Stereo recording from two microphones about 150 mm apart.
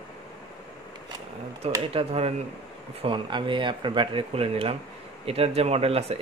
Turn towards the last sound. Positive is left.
turn(degrees=-40)  # may be behind; listen again after turning